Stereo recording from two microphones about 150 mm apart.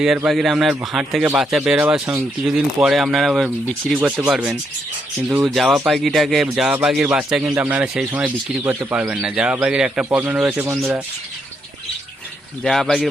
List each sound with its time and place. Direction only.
0.0 s a man's voice: 5° right (ahead or behind)
12.6 s a man's voice: centre (ahead or behind)